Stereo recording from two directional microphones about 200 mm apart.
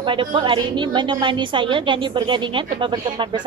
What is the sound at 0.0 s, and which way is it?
A woman's voice, 25° right (ahead or behind).